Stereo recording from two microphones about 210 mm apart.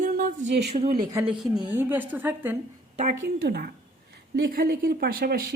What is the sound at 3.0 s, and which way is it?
Speech, 40° right (ahead or behind).